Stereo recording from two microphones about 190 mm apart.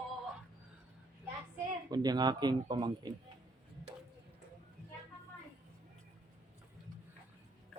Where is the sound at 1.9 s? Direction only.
20° right (ahead or behind).